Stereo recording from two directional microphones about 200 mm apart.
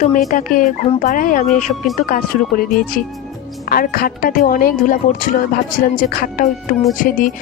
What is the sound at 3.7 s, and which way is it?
Speech, 45° left (ahead or behind).